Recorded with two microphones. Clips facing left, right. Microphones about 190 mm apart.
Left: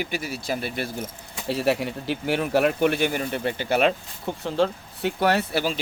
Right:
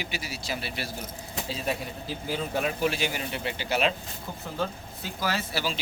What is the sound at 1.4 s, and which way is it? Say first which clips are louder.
Speech: left 9 dB; 70° left (ahead or behind).